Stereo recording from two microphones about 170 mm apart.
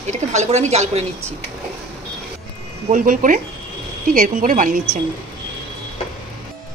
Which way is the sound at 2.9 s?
50° right (ahead or behind).